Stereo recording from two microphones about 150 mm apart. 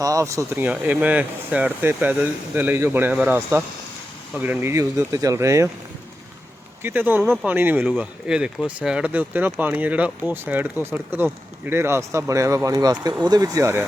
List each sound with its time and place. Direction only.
0.0 s speech: 20° right (ahead or behind)
6.8 s speech: 15° right (ahead or behind)